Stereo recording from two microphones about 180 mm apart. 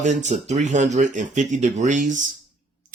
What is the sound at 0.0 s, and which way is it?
Speech, 40° right (ahead or behind).